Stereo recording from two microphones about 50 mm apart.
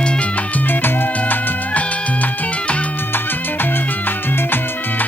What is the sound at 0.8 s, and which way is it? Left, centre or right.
Music, left.